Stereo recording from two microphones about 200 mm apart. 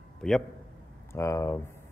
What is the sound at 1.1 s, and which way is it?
Speech, 15° left (ahead or behind).